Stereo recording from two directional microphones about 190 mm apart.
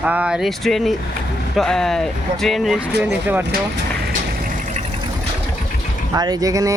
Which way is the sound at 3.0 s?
10° right (ahead or behind).